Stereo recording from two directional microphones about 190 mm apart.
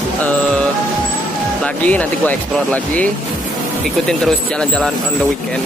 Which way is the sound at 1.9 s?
5° left (ahead or behind).